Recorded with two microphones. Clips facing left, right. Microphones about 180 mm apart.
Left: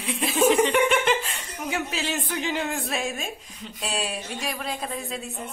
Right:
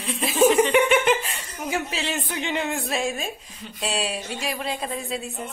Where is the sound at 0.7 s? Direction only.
Centre (ahead or behind).